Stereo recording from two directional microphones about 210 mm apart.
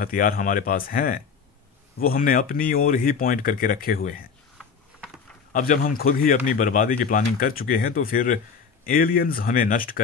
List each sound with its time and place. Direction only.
0.0 s speech: 40° left (ahead or behind)
5.5 s speech: 40° left (ahead or behind)